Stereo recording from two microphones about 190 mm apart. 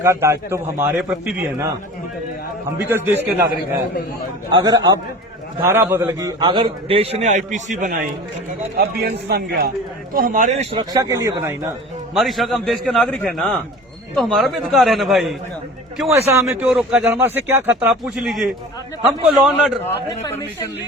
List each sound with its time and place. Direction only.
0.0 s speech: 15° right (ahead or behind)
2.7 s speech: 10° right (ahead or behind)
4.5 s a man's voice: 20° right (ahead or behind); by 8.0 s 45° right (ahead or behind)
8.8 s a man's voice: 55° right (ahead or behind)
10.2 s a man's voice: 45° right (ahead or behind); by 11.5 s 15° right (ahead or behind)
12.1 s a man's voice: centre (ahead or behind)
16.3 s a man's voice: 15° right (ahead or behind)